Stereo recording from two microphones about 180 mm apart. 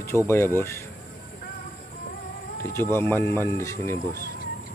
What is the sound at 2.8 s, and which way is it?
Speech, 15° left (ahead or behind).